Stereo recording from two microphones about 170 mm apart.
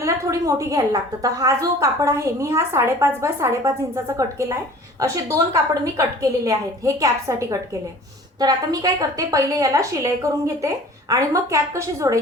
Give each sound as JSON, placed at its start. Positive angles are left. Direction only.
{"t": 0.0, "sound": "a woman's voice", "side_deg": -20}